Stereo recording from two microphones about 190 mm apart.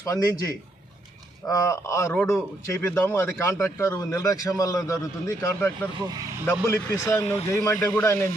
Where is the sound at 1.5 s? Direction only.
15° left (ahead or behind).